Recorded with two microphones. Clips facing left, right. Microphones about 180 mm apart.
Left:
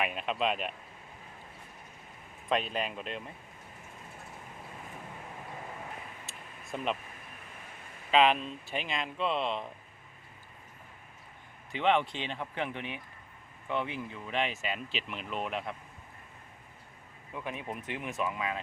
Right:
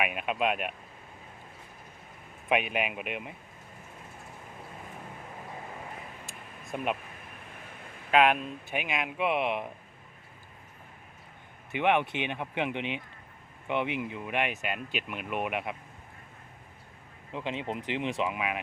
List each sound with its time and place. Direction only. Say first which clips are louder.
0.0 s speech: right 2 dB; 10° right (ahead or behind)
2.5 s speech: right 3 dB; 15° right (ahead or behind)
6.7 s speech: right 2 dB; 10° right (ahead or behind)
8.1 s speech: right 1 dB; 10° right (ahead or behind)
11.8 s speech: right 2 dB; 15° right (ahead or behind)
14.5 s speech: right 2 dB; centre (ahead or behind)
17.3 s speech: right 4 dB; 25° right (ahead or behind)